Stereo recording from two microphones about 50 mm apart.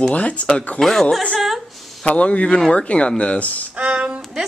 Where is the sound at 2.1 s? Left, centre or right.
Left.